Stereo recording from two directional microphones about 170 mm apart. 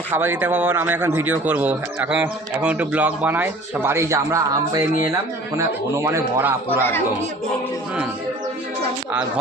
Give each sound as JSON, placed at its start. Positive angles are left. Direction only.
{"t": 0.1, "sound": "speech", "side_deg": -10}